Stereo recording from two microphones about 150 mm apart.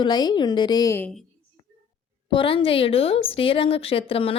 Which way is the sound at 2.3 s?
35° left (ahead or behind).